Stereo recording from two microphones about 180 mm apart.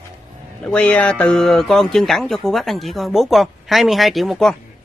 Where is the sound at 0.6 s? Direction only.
5° left (ahead or behind).